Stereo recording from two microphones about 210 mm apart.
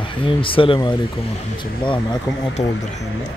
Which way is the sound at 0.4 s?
25° left (ahead or behind).